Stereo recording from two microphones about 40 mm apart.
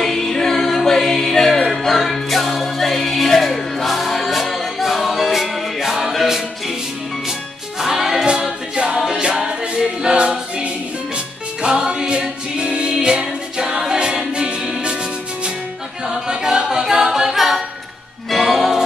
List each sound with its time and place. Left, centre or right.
0.0 s music: centre
3.8 s choir: centre
7.8 s music: centre
8.3 s a capella: right
11.6 s music: right
13.9 s a capella: right
16.1 s a capella: centre
18.3 s music: centre